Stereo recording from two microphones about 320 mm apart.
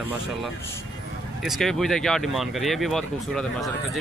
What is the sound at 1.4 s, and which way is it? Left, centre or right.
Speech, centre.